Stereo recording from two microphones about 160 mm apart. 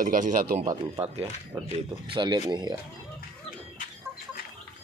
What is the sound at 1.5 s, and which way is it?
Speech, 25° right (ahead or behind).